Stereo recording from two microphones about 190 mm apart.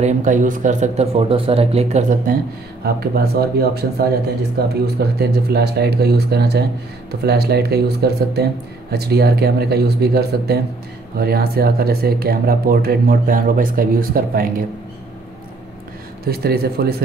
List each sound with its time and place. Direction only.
0.0 s speech: 40° right (ahead or behind)
2.8 s speech: 55° right (ahead or behind)
16.3 s speech: 55° right (ahead or behind)